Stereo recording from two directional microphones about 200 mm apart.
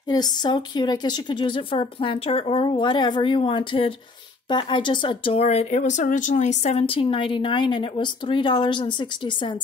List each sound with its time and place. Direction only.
0.1 s speech: 20° left (ahead or behind)